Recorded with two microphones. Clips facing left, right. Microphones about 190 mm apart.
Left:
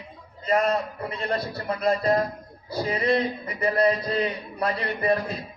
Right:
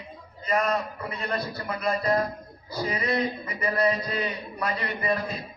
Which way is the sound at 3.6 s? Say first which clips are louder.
Left 3 dB; 30° left (ahead or behind).